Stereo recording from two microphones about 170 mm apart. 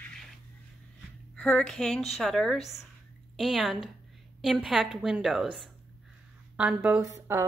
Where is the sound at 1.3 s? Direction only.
5° left (ahead or behind).